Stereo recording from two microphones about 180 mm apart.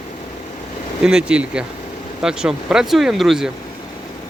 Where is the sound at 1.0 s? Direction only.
5° right (ahead or behind).